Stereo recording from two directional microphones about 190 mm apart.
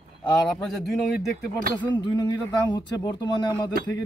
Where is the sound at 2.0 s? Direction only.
25° left (ahead or behind).